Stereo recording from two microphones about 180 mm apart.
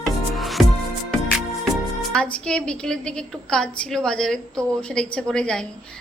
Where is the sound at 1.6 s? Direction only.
Centre (ahead or behind).